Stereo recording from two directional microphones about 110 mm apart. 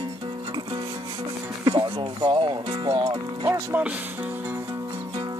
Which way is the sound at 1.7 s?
45° right (ahead or behind).